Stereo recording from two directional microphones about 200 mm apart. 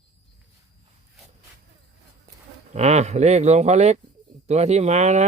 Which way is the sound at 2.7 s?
35° right (ahead or behind).